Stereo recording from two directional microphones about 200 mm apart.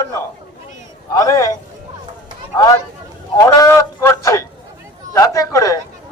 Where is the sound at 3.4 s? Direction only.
15° left (ahead or behind).